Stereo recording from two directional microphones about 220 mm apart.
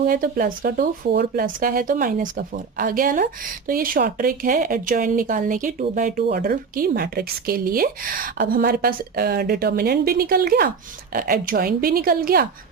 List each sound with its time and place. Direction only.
0.0 s speech: 40° right (ahead or behind)